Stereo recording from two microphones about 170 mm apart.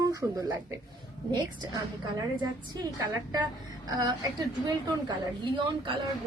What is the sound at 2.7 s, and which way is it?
Speech, 25° right (ahead or behind).